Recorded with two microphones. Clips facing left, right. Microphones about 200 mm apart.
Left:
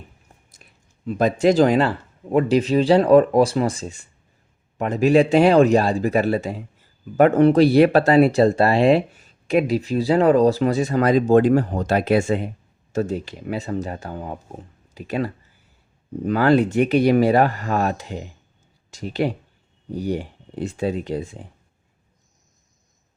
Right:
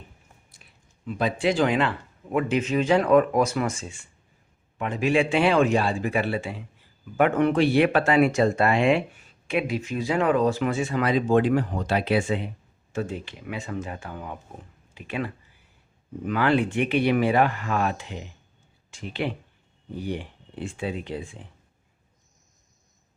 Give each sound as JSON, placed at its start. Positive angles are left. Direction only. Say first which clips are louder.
{"t": 0.5, "sound": "speech", "louder": "left 3 dB", "side_deg": 45}